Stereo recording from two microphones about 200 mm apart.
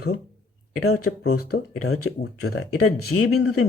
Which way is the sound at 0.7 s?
90° left.